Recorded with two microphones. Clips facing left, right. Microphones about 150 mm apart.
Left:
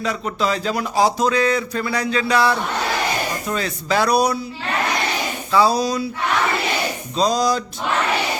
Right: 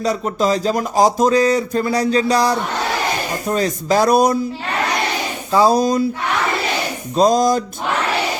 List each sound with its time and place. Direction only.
0.0 s speech: 40° right (ahead or behind)
5.5 s speech: 45° right (ahead or behind)
7.2 s speech: 50° right (ahead or behind)